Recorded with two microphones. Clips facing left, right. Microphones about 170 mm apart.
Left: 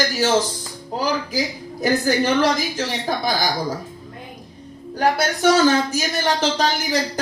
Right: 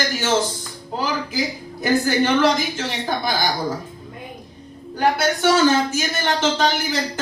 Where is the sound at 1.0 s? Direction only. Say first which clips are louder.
Left 1 dB; 40° left (ahead or behind).